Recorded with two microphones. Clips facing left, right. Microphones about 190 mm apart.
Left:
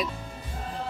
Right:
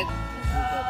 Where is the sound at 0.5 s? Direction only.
75° right (ahead or behind).